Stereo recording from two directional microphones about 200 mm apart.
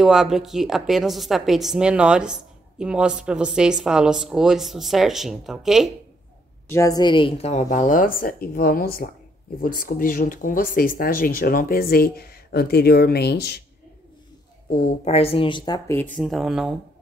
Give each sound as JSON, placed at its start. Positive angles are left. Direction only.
{"t": 0.0, "sound": "a woman's voice", "side_deg": 0}
{"t": 6.7, "sound": "a woman's voice", "side_deg": 15}
{"t": 15.0, "sound": "speech", "side_deg": 30}
{"t": 16.2, "sound": "a woman's voice", "side_deg": 0}